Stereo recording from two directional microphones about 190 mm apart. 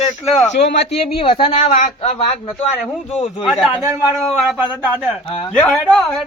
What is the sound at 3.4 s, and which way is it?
Speech, centre (ahead or behind).